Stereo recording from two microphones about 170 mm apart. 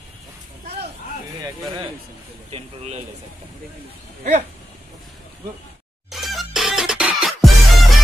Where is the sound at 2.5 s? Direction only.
40° right (ahead or behind).